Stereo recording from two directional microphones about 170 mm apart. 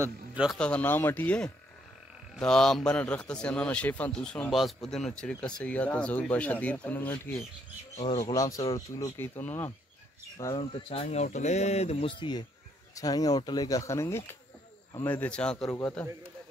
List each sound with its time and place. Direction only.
0.0 s a man's voice: 5° right (ahead or behind)
0.6 s a man's voice: 5° left (ahead or behind)
7.9 s speech: 40° left (ahead or behind)
8.3 s speech: 20° left (ahead or behind)
10.3 s speech: 25° left (ahead or behind); by 16.1 s 5° left (ahead or behind)